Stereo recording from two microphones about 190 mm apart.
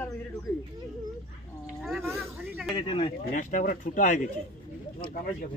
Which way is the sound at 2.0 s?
10° right (ahead or behind).